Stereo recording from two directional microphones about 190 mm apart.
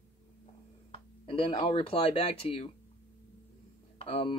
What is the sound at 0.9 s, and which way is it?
Speech, 30° left (ahead or behind).